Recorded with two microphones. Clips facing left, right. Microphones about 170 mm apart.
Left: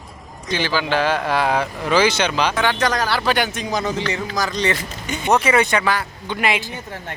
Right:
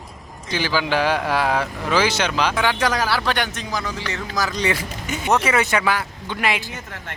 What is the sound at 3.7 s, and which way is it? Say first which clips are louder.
Speech: left 5 dB; 20° left (ahead or behind).